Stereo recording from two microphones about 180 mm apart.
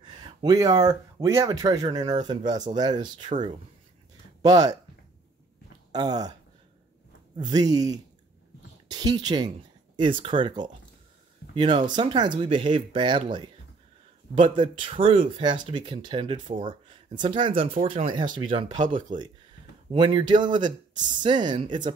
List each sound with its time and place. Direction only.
0.0 s speech: 20° right (ahead or behind)
3.3 s speech: 45° right (ahead or behind)
4.4 s speech: 20° right (ahead or behind)
5.9 s speech: 20° right (ahead or behind)
7.3 s speech: 25° right (ahead or behind)
16.4 s speech: 45° right (ahead or behind)
17.1 s speech: 25° right (ahead or behind)
18.5 s speech: 30° right (ahead or behind)